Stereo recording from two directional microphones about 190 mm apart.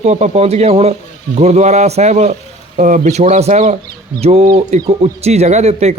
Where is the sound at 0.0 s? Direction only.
35° right (ahead or behind).